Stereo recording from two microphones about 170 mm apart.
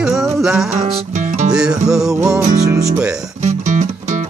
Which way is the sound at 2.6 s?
20° right (ahead or behind).